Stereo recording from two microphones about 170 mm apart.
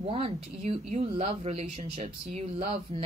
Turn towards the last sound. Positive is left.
turn(degrees=-40)  # may be behind; listen again after turning